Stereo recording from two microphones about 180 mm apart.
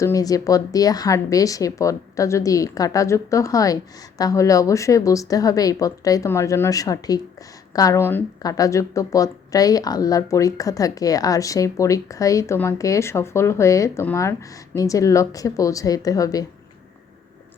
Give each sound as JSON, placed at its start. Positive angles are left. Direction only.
{"t": 0.0, "sound": "a woman's voice", "side_deg": 20}